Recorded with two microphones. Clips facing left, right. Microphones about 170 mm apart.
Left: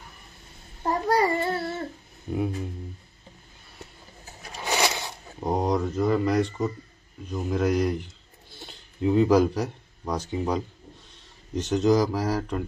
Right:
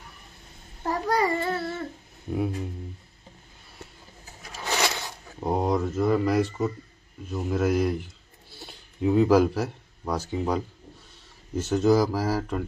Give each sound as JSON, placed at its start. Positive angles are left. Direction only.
{"t": 0.8, "sound": "babbling", "side_deg": 25}
{"t": 2.3, "sound": "speech", "side_deg": 0}
{"t": 4.6, "sound": "a sound", "side_deg": 10}
{"t": 5.4, "sound": "speech", "side_deg": 0}
{"t": 11.5, "sound": "speech", "side_deg": -10}